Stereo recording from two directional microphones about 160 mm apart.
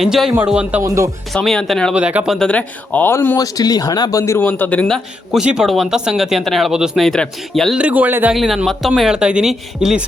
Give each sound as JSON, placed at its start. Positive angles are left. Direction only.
{"t": 0.0, "sound": "a man's voice", "side_deg": -5}
{"t": 0.8, "sound": "speech", "side_deg": -20}
{"t": 1.3, "sound": "a man's voice", "side_deg": 5}
{"t": 8.4, "sound": "a man's voice", "side_deg": 0}